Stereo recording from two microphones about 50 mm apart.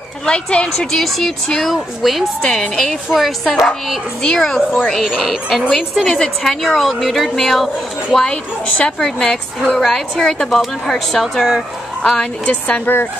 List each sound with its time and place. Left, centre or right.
0.2 s a woman's voice: centre
0.7 s a woman's voice: centre
4.2 s a woman's voice: centre
5.0 s a woman's voice: centre
12.4 s a woman's voice: left
12.8 s speech: left